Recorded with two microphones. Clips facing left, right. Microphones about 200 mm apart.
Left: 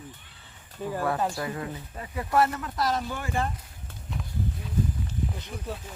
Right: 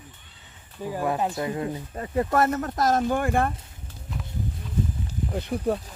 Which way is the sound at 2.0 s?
45° right (ahead or behind).